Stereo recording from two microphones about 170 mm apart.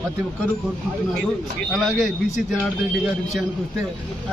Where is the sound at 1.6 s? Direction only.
Centre (ahead or behind).